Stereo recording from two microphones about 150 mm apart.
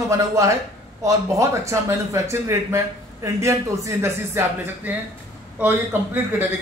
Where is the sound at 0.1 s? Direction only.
20° right (ahead or behind).